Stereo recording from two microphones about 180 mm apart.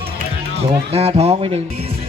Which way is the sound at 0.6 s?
35° right (ahead or behind).